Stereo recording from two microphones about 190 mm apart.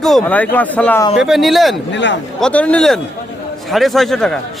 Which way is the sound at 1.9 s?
70° left (ahead or behind).